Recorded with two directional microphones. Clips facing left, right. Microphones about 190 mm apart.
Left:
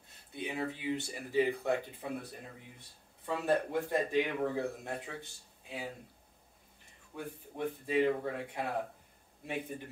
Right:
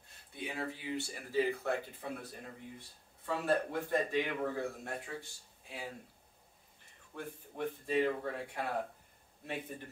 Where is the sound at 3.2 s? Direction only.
15° left (ahead or behind).